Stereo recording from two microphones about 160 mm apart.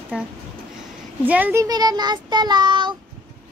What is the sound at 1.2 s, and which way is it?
Speech, 10° right (ahead or behind).